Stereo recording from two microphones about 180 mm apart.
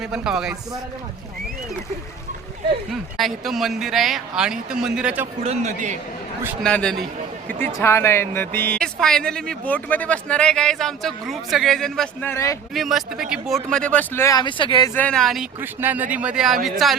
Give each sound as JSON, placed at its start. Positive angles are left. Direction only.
{"t": 0.0, "sound": "speech", "side_deg": -5}
{"t": 2.9, "sound": "speech", "side_deg": 0}
{"t": 5.4, "sound": "a man's voice", "side_deg": -40}
{"t": 6.6, "sound": "speech", "side_deg": 5}
{"t": 12.3, "sound": "speech", "side_deg": 15}
{"t": 12.7, "sound": "speech", "side_deg": 0}
{"t": 14.9, "sound": "speech", "side_deg": 5}
{"t": 15.6, "sound": "speech", "side_deg": -10}